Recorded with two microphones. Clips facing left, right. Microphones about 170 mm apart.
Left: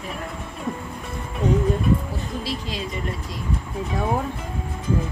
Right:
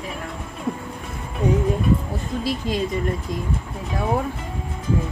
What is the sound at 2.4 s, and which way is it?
Speech, 50° right (ahead or behind).